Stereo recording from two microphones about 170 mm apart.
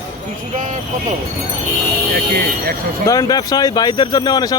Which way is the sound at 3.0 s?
20° left (ahead or behind).